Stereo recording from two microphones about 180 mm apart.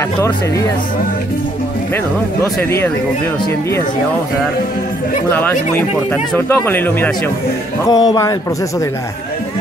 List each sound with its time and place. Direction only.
5.3 s speech: 10° left (ahead or behind)
7.9 s a man's voice: 20° left (ahead or behind)